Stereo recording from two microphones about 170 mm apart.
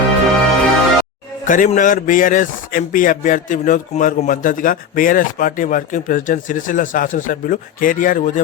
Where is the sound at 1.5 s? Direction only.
50° left (ahead or behind).